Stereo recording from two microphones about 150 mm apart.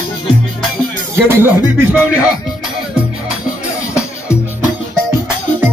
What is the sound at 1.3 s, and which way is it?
Music, 15° right (ahead or behind).